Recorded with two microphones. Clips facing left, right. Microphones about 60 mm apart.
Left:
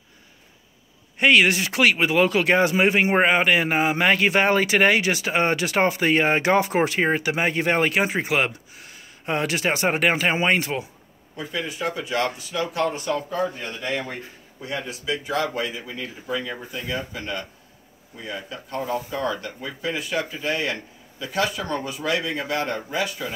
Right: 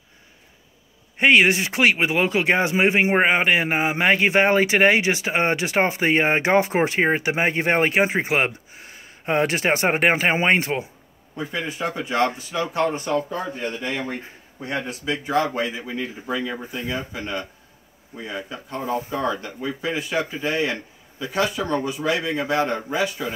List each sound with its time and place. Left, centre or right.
1.1 s speech: right
14.0 s speech: right
15.3 s speech: right